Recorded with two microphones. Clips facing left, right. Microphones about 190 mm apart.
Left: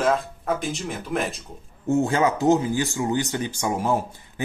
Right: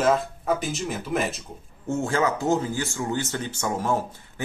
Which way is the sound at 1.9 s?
20° left (ahead or behind).